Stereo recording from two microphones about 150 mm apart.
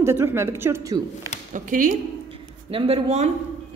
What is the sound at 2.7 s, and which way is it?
Speech, 40° right (ahead or behind).